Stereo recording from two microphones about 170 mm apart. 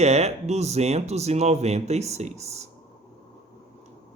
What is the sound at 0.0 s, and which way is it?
A woman's voice, 40° right (ahead or behind).